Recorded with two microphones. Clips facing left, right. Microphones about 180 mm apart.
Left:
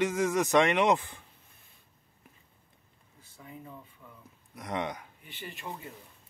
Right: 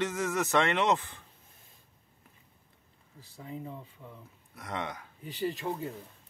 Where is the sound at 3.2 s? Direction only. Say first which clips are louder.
Right 6 dB; 30° right (ahead or behind).